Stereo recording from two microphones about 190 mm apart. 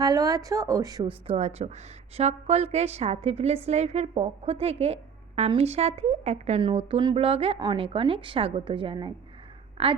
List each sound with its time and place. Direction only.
0.0 s a woman's voice: 20° right (ahead or behind)
1.3 s a woman's voice: 35° right (ahead or behind)